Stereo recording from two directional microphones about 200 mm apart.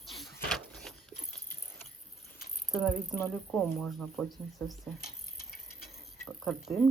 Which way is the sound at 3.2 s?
10° left (ahead or behind).